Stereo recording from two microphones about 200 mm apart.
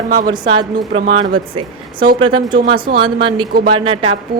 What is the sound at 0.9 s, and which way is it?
Speech, 30° right (ahead or behind).